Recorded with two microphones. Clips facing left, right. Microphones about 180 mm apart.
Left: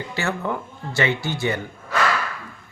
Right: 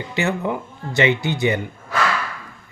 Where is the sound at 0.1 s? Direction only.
20° right (ahead or behind).